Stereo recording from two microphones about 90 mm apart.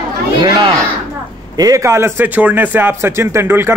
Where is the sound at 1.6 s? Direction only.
40° right (ahead or behind).